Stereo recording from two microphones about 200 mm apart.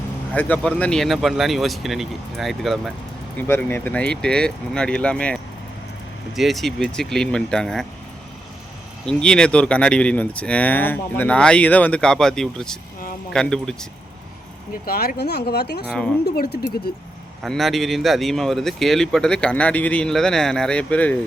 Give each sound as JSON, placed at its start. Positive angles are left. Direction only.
{"t": 0.3, "sound": "speech", "side_deg": 5}
{"t": 9.0, "sound": "speech", "side_deg": 5}
{"t": 14.8, "sound": "speech", "side_deg": 50}
{"t": 17.4, "sound": "speech", "side_deg": 0}